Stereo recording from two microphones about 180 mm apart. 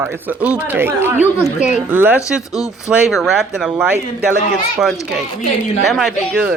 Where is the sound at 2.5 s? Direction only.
20° left (ahead or behind).